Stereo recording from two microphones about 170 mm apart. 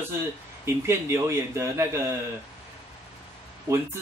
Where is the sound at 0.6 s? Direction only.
15° right (ahead or behind).